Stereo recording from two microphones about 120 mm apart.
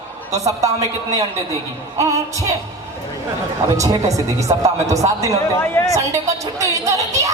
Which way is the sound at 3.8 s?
30° right (ahead or behind).